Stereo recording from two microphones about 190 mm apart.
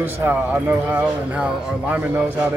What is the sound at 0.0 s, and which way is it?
Speech, 10° right (ahead or behind).